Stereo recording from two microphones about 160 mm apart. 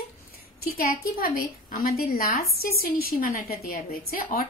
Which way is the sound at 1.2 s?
65° left (ahead or behind).